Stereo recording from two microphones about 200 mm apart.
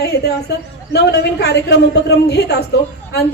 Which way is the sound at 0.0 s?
55° left (ahead or behind).